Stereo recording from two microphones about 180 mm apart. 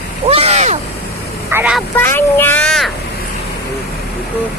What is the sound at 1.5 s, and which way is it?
Speech, 10° right (ahead or behind).